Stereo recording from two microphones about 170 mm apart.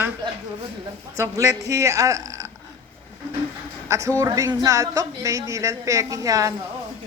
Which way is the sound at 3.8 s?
15° right (ahead or behind).